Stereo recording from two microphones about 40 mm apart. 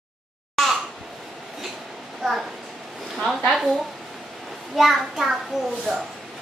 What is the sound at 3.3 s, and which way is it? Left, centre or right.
Speech, centre.